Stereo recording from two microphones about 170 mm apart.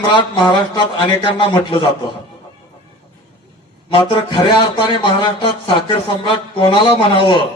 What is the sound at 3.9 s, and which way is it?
A man's voice, 30° left (ahead or behind).